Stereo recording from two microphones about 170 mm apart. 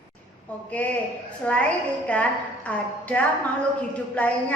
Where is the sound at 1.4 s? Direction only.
10° left (ahead or behind).